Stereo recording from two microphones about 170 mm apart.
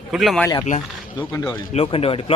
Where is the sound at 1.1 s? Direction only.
20° left (ahead or behind).